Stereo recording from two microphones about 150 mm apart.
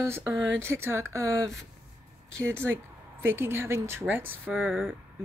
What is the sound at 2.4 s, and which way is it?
Speech, 15° right (ahead or behind).